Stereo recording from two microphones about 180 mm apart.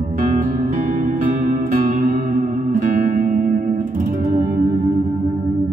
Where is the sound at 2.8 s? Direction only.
50° right (ahead or behind).